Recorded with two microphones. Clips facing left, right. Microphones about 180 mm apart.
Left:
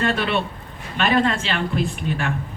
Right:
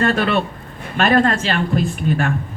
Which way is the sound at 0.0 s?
45° right (ahead or behind).